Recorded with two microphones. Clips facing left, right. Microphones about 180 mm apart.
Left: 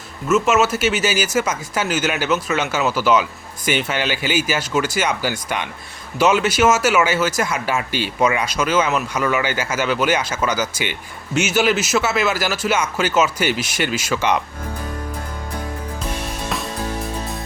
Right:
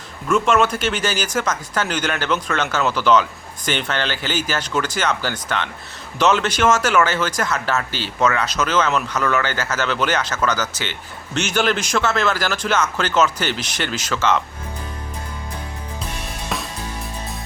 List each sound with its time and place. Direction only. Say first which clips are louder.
0.3 s speech: left 1 dB; 5° left (ahead or behind)